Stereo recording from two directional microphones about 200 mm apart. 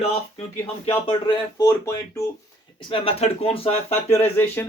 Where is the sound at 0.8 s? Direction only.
25° left (ahead or behind).